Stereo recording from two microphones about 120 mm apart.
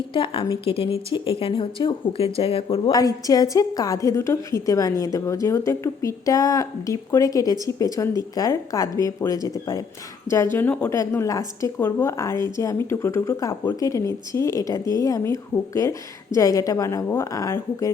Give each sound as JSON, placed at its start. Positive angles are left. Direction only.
{"t": 0.1, "sound": "speech", "side_deg": 45}
{"t": 2.9, "sound": "a woman's voice", "side_deg": 30}
{"t": 11.8, "sound": "a woman's voice", "side_deg": 15}